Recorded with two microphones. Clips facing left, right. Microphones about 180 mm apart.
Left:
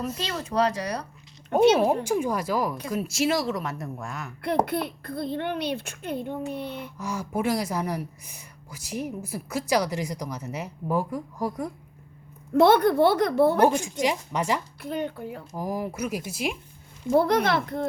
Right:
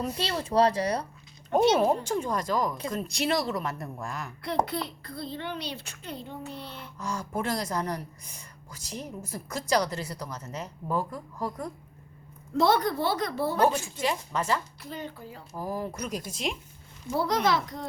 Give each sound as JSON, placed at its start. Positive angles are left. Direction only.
{"t": 0.2, "sound": "speech", "side_deg": -30}
{"t": 2.0, "sound": "speech", "side_deg": 10}
{"t": 4.6, "sound": "a child's voice", "side_deg": 55}
{"t": 7.0, "sound": "speech", "side_deg": 10}
{"t": 12.5, "sound": "a child's voice", "side_deg": 60}
{"t": 13.7, "sound": "speech", "side_deg": 15}
{"t": 14.8, "sound": "a child's voice", "side_deg": 60}
{"t": 15.5, "sound": "speech", "side_deg": 15}
{"t": 17.1, "sound": "a child's voice", "side_deg": 55}